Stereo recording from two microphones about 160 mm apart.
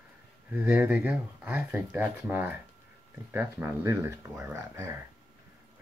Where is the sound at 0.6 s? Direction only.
10° right (ahead or behind).